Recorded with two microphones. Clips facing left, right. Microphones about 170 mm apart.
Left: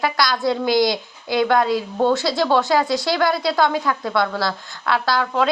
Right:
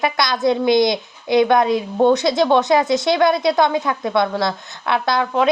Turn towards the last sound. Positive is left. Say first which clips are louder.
# right 2 dB
turn(degrees=-20)  # may be behind; listen again after turning